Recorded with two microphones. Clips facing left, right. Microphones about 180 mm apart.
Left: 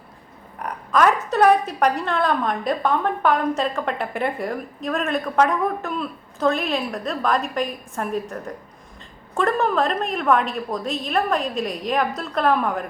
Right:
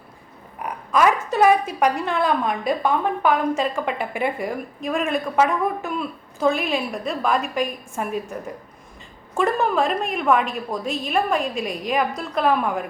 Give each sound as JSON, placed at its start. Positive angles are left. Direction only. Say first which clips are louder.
{"t": 0.6, "sound": "a woman's voice", "louder": "even", "side_deg": -5}